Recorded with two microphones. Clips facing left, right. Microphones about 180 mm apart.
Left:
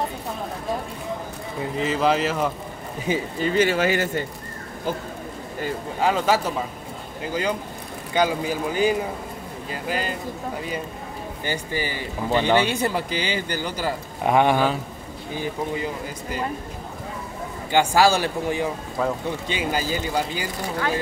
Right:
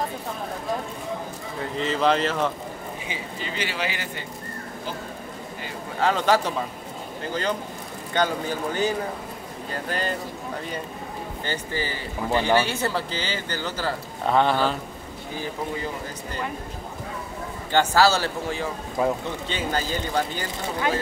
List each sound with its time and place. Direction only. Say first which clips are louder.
1.8 s speech: left 1 dB; 5° left (ahead or behind)
3.1 s speech: left 14 dB; 45° left (ahead or behind)
5.9 s speech: even; 10° left (ahead or behind)
8.1 s speech: left 3 dB; 10° left (ahead or behind)
11.4 s speech: left 2 dB; 15° left (ahead or behind)
17.6 s speech: left 1 dB; 15° left (ahead or behind)
19.0 s speech: right 1 dB; 15° right (ahead or behind)
19.4 s speech: left 1 dB; 10° left (ahead or behind)